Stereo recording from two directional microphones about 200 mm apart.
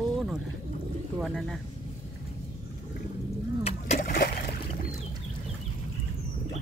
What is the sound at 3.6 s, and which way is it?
Vehicle, 30° left (ahead or behind).